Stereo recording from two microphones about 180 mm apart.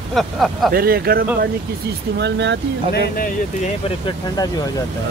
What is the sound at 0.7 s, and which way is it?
Speech, 55° right (ahead or behind).